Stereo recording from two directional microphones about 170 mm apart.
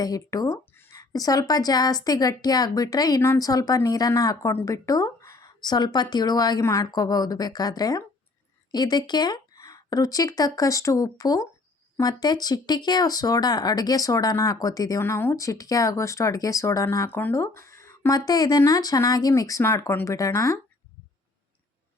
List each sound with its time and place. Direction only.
0.0 s speech: 20° left (ahead or behind)